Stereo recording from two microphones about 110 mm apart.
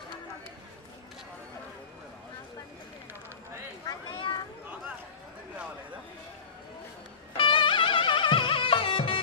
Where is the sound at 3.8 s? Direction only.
45° left (ahead or behind).